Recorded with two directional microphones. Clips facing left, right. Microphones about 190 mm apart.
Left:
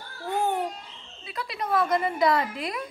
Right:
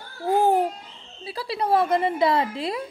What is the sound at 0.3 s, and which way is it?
Babbling, 35° right (ahead or behind).